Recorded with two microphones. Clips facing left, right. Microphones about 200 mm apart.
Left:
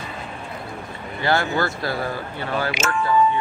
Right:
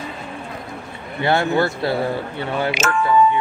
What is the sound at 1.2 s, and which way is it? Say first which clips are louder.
Speech: right 4 dB; 20° right (ahead or behind).